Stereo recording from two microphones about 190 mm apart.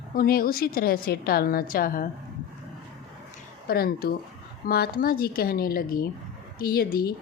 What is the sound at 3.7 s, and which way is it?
A woman's voice, 55° left (ahead or behind).